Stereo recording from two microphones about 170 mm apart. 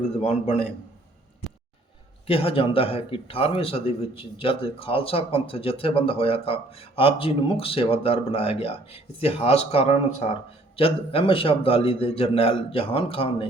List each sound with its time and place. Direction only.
0.2 s a man's voice: 40° left (ahead or behind)
2.2 s a man's voice: 35° left (ahead or behind)